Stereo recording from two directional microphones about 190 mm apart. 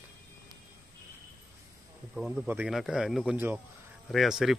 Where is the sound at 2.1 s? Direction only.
Centre (ahead or behind).